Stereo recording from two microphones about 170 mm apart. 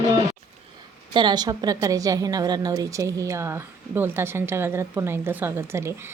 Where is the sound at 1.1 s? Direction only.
25° right (ahead or behind).